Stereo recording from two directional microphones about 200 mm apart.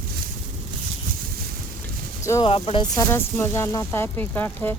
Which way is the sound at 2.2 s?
15° left (ahead or behind).